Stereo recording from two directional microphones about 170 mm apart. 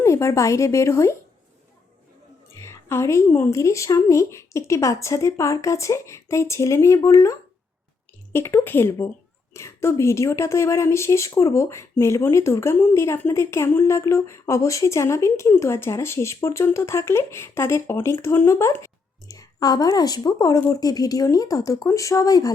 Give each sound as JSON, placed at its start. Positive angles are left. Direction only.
{"t": 0.0, "sound": "speech", "side_deg": 15}
{"t": 2.9, "sound": "a woman's voice", "side_deg": 15}